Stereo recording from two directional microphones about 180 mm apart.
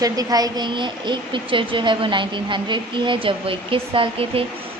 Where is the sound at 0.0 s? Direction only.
20° right (ahead or behind).